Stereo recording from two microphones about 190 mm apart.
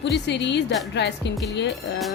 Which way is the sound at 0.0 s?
65° left (ahead or behind).